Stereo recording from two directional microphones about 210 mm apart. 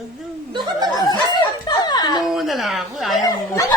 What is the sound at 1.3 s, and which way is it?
Music, 20° left (ahead or behind).